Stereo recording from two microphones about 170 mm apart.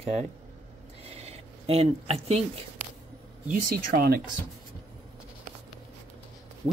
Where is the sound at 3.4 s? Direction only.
50° right (ahead or behind).